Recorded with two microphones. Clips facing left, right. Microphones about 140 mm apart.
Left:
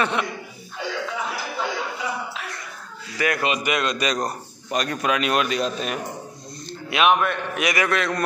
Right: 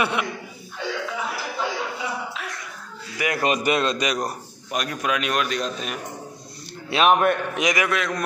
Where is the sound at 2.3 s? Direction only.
Centre (ahead or behind).